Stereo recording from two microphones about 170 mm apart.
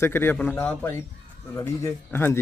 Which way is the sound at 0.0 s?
15° left (ahead or behind).